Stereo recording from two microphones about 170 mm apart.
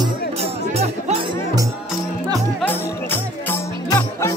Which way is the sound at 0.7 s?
35° right (ahead or behind).